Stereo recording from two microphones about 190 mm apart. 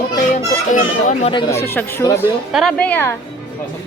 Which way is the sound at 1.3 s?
20° left (ahead or behind).